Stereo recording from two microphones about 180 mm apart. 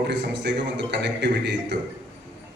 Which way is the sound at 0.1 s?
75° right (ahead or behind).